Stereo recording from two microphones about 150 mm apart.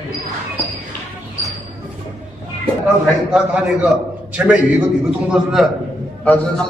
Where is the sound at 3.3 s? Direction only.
10° right (ahead or behind).